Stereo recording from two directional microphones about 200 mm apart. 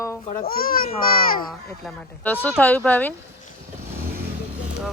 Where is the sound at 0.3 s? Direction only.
45° left (ahead or behind).